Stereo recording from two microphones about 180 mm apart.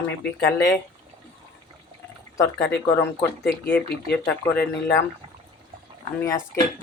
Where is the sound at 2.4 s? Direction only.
20° left (ahead or behind).